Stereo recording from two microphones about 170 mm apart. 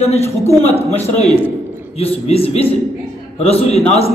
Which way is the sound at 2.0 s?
35° left (ahead or behind).